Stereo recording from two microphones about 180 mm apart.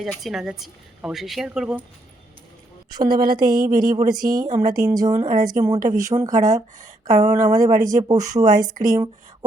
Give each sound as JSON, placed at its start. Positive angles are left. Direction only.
{"t": 0.0, "sound": "a woman's voice", "side_deg": 0}
{"t": 2.9, "sound": "speech", "side_deg": -25}